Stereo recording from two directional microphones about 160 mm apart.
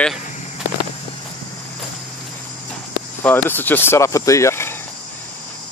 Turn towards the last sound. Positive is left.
turn(degrees=15)  # may be behind; listen again after turning